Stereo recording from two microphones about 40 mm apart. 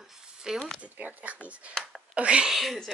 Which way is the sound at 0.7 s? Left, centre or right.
Right.